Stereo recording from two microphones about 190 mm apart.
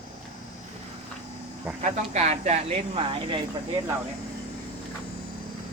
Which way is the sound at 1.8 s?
40° right (ahead or behind).